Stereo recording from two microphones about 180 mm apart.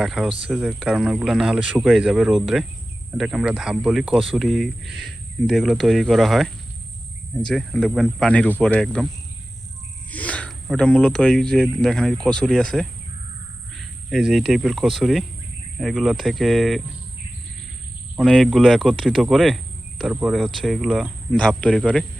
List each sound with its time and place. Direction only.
0.0 s speech: centre (ahead or behind)
10.1 s speech: 10° left (ahead or behind)
18.2 s speech: centre (ahead or behind)